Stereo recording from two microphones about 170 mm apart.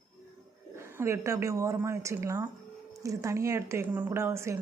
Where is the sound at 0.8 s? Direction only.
15° right (ahead or behind).